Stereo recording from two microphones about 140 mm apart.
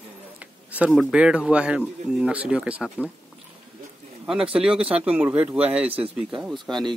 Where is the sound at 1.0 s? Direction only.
5° right (ahead or behind).